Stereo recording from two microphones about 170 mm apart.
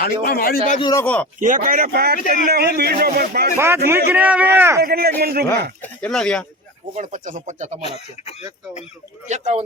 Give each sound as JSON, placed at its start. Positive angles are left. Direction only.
{"t": 0.0, "sound": "a man's voice", "side_deg": 60}
{"t": 0.8, "sound": "a man's voice", "side_deg": 25}
{"t": 1.0, "sound": "speech", "side_deg": 10}
{"t": 1.5, "sound": "speech", "side_deg": -55}
{"t": 3.6, "sound": "a man's voice", "side_deg": -15}
{"t": 4.8, "sound": "speech", "side_deg": -65}
{"t": 5.8, "sound": "speech", "side_deg": 5}
{"t": 6.9, "sound": "speech", "side_deg": -45}
{"t": 7.9, "sound": "speech", "side_deg": 35}
{"t": 9.2, "sound": "speech", "side_deg": -45}